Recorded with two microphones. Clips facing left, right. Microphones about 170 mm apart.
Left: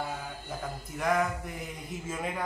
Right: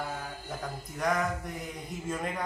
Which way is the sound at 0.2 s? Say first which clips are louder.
Even; 5° left (ahead or behind).